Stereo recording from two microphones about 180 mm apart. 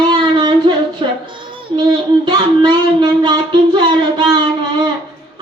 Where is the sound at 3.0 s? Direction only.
25° right (ahead or behind).